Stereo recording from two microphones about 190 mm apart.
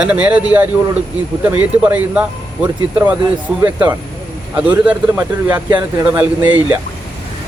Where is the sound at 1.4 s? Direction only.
5° right (ahead or behind).